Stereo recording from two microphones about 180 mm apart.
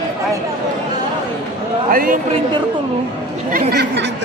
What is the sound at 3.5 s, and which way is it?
Speech, 45° right (ahead or behind).